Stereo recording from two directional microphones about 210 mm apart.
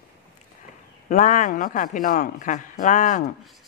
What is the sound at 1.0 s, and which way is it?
Speech, 35° left (ahead or behind).